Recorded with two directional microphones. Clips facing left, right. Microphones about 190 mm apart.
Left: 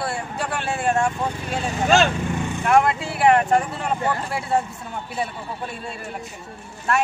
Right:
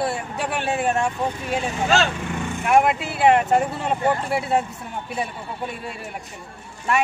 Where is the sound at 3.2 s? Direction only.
20° right (ahead or behind).